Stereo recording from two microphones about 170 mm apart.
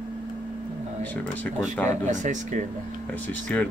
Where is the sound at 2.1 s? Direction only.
45° right (ahead or behind).